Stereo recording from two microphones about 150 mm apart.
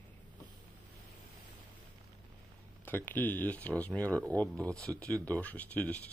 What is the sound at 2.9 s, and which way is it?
Speech, 15° left (ahead or behind).